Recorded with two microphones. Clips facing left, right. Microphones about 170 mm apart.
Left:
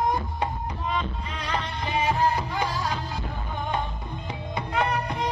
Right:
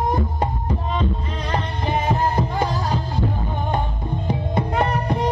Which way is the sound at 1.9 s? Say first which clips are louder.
Right 4 dB; 45° right (ahead or behind).